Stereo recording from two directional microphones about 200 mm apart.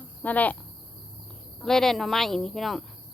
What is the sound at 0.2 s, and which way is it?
Speech, 10° left (ahead or behind).